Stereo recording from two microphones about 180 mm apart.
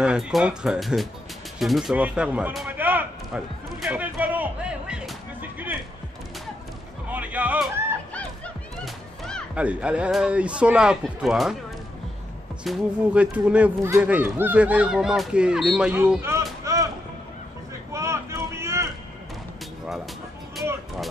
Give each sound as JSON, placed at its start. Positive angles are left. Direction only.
{"t": 0.0, "sound": "a man's voice", "side_deg": -5}
{"t": 3.8, "sound": "music", "side_deg": -10}
{"t": 7.1, "sound": "music", "side_deg": -10}
{"t": 8.8, "sound": "speech", "side_deg": 0}
{"t": 12.6, "sound": "speech", "side_deg": -5}
{"t": 16.6, "sound": "a sound", "side_deg": -20}
{"t": 17.9, "sound": "vehicle", "side_deg": -15}